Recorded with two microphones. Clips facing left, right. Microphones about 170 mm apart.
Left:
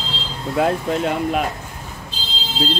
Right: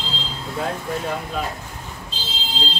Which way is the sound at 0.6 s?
85° left.